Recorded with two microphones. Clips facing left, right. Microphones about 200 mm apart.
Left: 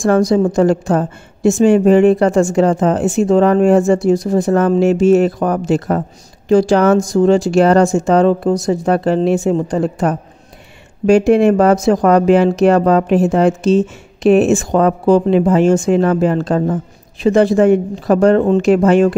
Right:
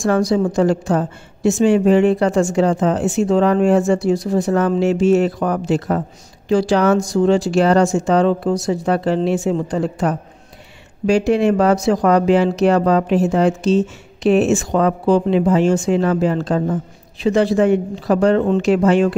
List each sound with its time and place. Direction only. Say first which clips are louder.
0.0 s speech: left 4 dB; 45° left (ahead or behind)